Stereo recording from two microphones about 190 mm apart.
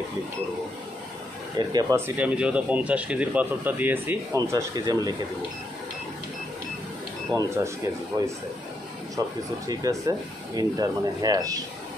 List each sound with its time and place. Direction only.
1.6 s speech: 20° right (ahead or behind)
7.3 s speech: 15° right (ahead or behind)
9.7 s speech: 20° right (ahead or behind)